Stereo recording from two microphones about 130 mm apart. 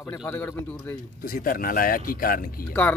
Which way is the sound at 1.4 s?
90° left.